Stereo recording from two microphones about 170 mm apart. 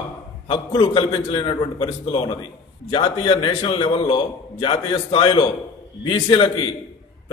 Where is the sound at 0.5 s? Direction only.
30° left (ahead or behind).